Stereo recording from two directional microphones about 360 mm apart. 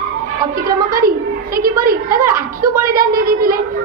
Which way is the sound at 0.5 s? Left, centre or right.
Right.